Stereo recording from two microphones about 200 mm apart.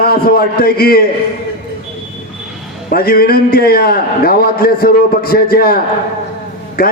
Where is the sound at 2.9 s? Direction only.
50° left (ahead or behind).